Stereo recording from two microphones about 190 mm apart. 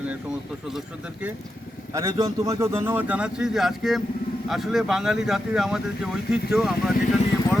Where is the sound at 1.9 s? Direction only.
15° right (ahead or behind).